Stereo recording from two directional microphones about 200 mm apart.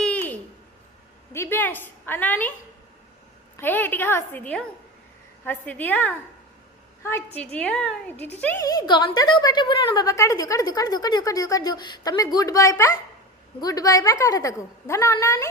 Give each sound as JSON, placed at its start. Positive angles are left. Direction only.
{"t": 0.0, "sound": "a sound", "side_deg": 5}
{"t": 1.3, "sound": "a woman's voice", "side_deg": 10}
{"t": 3.6, "sound": "a woman's voice", "side_deg": 10}